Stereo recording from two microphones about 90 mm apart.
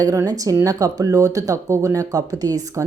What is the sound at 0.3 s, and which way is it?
Speech, 40° right (ahead or behind).